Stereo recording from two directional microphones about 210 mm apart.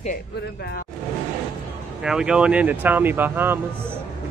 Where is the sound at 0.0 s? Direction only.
45° left (ahead or behind).